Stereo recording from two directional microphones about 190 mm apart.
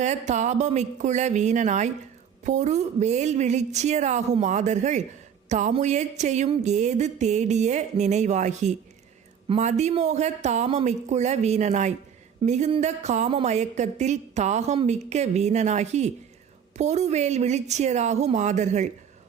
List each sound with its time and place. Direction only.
0.0 s speech: 40° right (ahead or behind)